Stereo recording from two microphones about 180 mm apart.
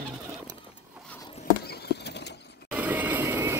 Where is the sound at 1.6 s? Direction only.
60° left (ahead or behind).